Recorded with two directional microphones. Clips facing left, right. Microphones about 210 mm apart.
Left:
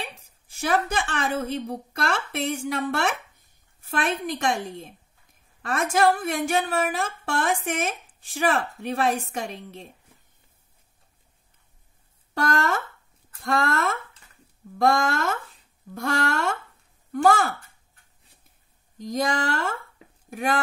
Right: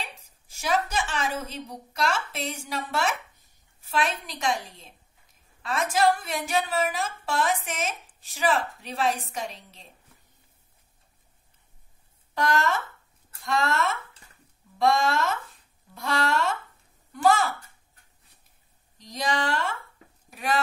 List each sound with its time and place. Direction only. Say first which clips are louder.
0.0 s a woman's voice: left 3 dB; 55° left (ahead or behind)
12.5 s a woman's voice: left 1 dB; 50° left (ahead or behind)
18.9 s a woman's voice: left 3 dB; 50° left (ahead or behind)